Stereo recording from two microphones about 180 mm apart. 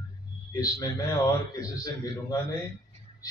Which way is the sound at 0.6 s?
20° left (ahead or behind).